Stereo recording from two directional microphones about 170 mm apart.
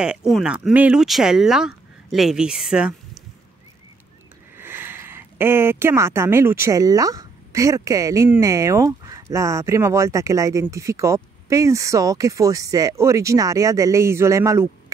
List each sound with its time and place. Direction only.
0.0 s speech: 5° right (ahead or behind)
4.6 s speech: 15° right (ahead or behind)